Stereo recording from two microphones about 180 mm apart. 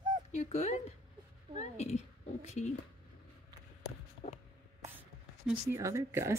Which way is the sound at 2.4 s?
40° left (ahead or behind).